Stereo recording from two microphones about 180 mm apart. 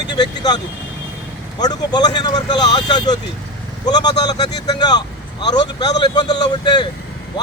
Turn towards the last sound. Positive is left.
turn(degrees=25)  # may be behind; listen again after turning